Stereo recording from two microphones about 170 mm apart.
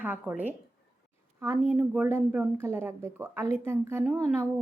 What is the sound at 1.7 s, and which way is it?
Speech, 5° right (ahead or behind).